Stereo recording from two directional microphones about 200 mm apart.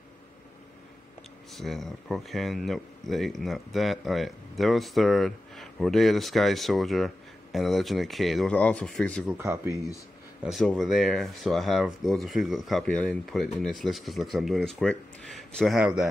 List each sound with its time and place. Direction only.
1.5 s speech: centre (ahead or behind)
9.4 s speech: 15° right (ahead or behind)
10.4 s speech: centre (ahead or behind)